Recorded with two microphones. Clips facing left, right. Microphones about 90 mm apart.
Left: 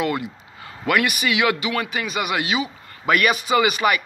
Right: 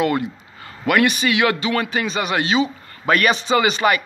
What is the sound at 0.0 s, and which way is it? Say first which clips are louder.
Speech: right 4 dB; 15° left (ahead or behind).